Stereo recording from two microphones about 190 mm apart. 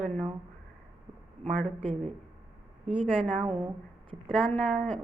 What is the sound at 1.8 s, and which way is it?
Speech, 30° right (ahead or behind).